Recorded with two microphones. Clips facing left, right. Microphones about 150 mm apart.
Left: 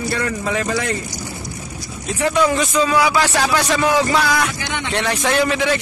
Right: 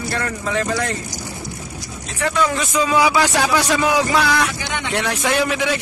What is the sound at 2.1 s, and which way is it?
Speech, 15° left (ahead or behind).